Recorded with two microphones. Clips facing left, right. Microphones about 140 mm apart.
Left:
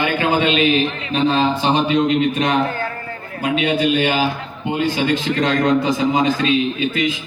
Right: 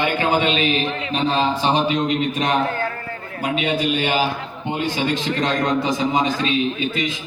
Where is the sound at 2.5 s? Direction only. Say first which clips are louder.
Left 1 dB; centre (ahead or behind).